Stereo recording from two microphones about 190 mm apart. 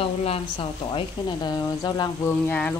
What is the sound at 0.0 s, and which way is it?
Speech, 30° left (ahead or behind).